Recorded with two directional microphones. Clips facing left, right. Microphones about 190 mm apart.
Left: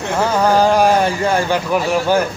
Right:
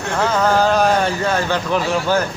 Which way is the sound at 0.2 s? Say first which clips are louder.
Left 2 dB; 10° left (ahead or behind).